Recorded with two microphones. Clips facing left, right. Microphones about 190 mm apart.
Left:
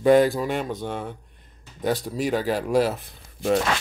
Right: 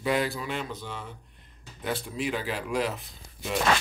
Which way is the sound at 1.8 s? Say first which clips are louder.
Left 7 dB; 40° left (ahead or behind).